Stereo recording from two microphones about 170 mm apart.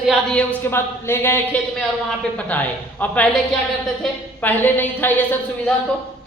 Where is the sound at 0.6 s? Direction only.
15° left (ahead or behind).